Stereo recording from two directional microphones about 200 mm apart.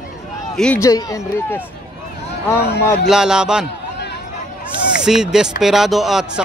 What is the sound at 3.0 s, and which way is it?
Speech, 5° right (ahead or behind).